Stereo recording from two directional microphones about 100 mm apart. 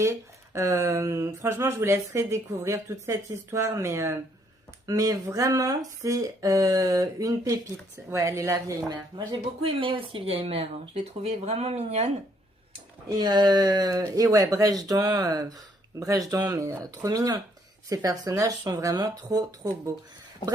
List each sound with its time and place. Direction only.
0.0 s speech: 30° right (ahead or behind)
9.8 s speech: 60° right (ahead or behind); by 12.1 s 90° right
13.1 s speech: 40° right (ahead or behind)